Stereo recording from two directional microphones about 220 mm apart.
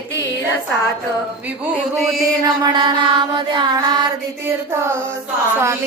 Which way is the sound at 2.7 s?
20° right (ahead or behind).